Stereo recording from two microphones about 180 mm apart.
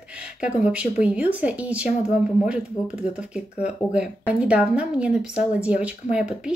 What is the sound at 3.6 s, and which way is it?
Speech, 5° right (ahead or behind).